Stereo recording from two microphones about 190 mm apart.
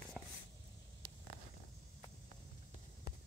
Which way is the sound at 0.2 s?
Centre (ahead or behind).